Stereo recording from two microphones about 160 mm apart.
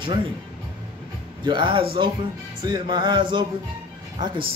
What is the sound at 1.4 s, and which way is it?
A man's voice, 30° right (ahead or behind).